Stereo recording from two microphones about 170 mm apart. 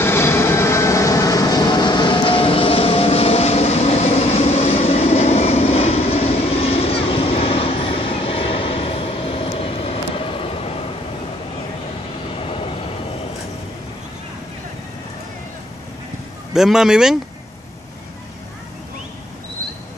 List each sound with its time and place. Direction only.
0.0 s vehicle: 15° left (ahead or behind); by 10.8 s 35° left (ahead or behind)
12.4 s train: 35° left (ahead or behind)
16.5 s speech: 5° right (ahead or behind)